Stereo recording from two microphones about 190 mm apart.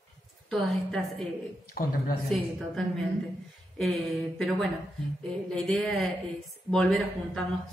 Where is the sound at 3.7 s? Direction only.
5° left (ahead or behind).